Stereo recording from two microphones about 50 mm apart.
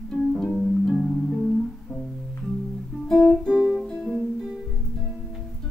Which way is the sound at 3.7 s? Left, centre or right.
Centre.